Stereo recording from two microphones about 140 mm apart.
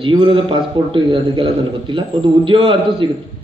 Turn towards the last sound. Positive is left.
turn(degrees=-35)  # may be behind; listen again after turning